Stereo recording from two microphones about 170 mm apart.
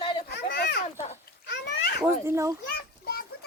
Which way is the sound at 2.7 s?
65° left (ahead or behind).